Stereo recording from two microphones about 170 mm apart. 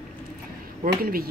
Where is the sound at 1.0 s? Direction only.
60° right (ahead or behind).